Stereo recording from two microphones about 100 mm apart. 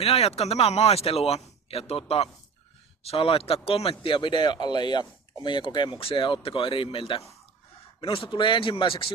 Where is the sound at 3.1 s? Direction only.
70° left (ahead or behind).